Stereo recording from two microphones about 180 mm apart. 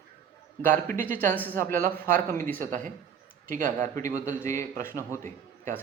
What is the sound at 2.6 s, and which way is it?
Speech, 50° right (ahead or behind).